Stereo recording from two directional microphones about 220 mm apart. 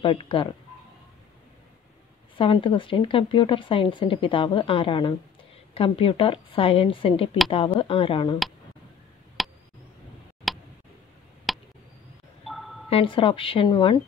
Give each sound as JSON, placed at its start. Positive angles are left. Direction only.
{"t": 0.0, "sound": "a woman's voice", "side_deg": 25}
{"t": 2.3, "sound": "a woman's voice", "side_deg": 25}
{"t": 9.4, "sound": "a sound", "side_deg": 0}
{"t": 10.5, "sound": "tick", "side_deg": 0}
{"t": 11.5, "sound": "a sound", "side_deg": 0}
{"t": 12.9, "sound": "a woman's voice", "side_deg": 25}